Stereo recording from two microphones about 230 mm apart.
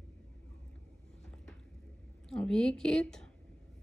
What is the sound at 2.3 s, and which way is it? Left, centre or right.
Speech, centre.